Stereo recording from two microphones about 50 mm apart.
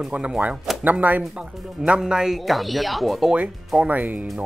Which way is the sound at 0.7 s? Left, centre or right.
Centre.